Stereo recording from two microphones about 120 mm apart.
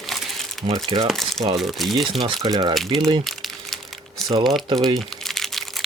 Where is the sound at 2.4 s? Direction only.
35° right (ahead or behind).